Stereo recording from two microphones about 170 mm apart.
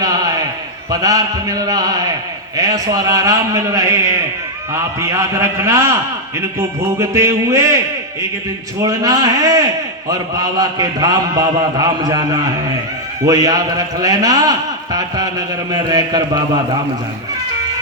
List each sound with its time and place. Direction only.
0.9 s a man's voice: 20° right (ahead or behind)
8.8 s a man's voice: 20° right (ahead or behind)